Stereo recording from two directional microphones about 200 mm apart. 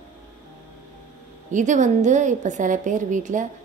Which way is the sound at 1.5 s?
40° right (ahead or behind).